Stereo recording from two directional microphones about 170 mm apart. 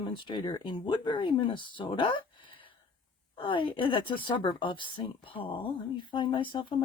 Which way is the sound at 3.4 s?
30° left (ahead or behind).